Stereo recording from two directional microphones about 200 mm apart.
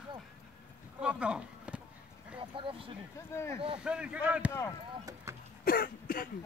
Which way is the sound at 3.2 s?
15° left (ahead or behind).